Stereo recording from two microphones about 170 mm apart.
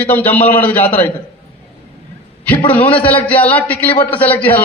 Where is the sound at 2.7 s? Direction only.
10° left (ahead or behind).